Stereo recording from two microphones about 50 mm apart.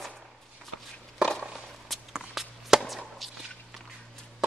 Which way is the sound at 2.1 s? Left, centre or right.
Centre.